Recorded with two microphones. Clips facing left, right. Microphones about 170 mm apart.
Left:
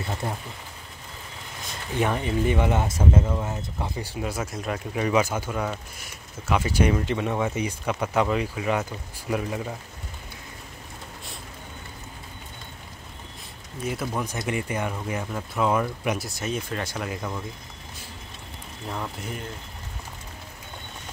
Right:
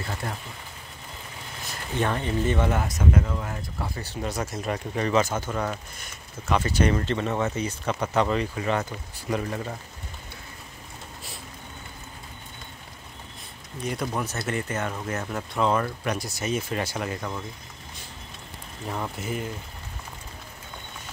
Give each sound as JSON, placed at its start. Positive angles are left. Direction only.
{"t": 0.2, "sound": "speech", "side_deg": 20}
{"t": 2.0, "sound": "speech", "side_deg": 10}
{"t": 2.8, "sound": "speech", "side_deg": 25}
{"t": 13.8, "sound": "speech", "side_deg": 5}
{"t": 18.9, "sound": "speech", "side_deg": 0}